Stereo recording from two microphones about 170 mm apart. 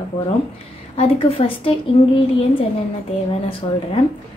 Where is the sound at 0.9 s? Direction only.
35° left (ahead or behind).